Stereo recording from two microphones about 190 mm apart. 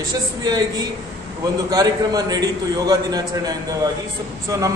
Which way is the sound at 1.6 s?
20° right (ahead or behind).